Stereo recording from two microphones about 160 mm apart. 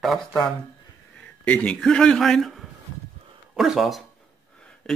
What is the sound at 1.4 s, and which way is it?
Speech, 10° left (ahead or behind).